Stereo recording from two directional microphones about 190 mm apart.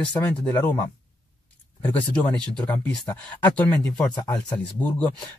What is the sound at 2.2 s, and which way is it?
Speech, 10° left (ahead or behind).